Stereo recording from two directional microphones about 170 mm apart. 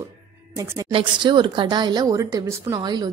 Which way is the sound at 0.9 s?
30° right (ahead or behind).